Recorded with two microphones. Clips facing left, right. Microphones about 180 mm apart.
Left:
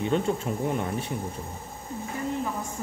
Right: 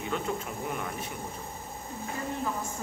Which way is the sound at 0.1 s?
30° left (ahead or behind).